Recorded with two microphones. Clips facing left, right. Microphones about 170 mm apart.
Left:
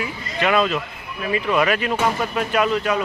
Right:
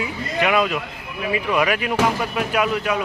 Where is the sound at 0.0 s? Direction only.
10° right (ahead or behind).